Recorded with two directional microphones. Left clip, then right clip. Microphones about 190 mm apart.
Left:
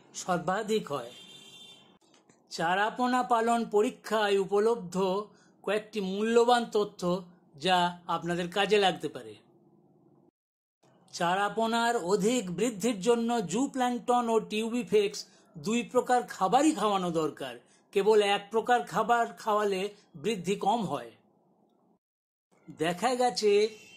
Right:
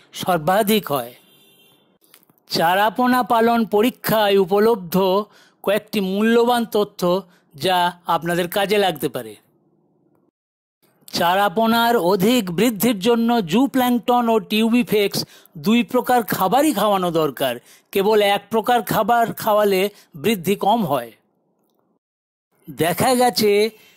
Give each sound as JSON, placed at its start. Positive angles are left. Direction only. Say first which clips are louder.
{"t": 0.1, "sound": "speech", "louder": "right 12 dB", "side_deg": -50}
{"t": 2.4, "sound": "speech", "louder": "right 11 dB", "side_deg": -50}
{"t": 11.1, "sound": "speech", "louder": "right 11 dB", "side_deg": -50}
{"t": 22.8, "sound": "speech", "louder": "right 11 dB", "side_deg": -55}